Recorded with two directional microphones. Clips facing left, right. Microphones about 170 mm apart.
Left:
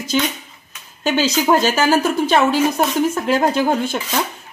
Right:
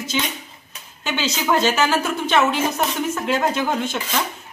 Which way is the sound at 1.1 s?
40° left (ahead or behind).